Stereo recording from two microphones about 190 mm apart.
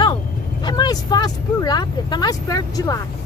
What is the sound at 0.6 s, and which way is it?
Speech, 20° left (ahead or behind).